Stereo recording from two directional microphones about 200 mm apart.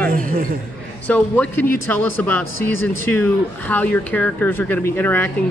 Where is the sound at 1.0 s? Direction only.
5° left (ahead or behind).